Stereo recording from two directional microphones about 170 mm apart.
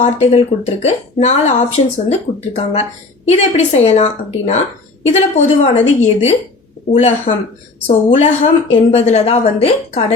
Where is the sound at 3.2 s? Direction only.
40° left (ahead or behind).